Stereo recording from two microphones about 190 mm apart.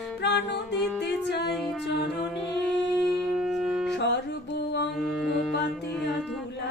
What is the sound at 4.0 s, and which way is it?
Music, 65° left (ahead or behind).